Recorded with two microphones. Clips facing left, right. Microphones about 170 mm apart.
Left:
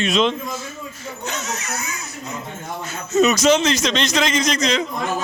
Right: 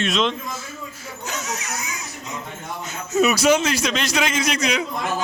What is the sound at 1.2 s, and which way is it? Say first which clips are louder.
A man's voice: left 1 dB; 10° right (ahead or behind).